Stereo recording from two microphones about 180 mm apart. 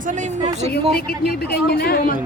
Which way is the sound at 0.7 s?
60° left (ahead or behind).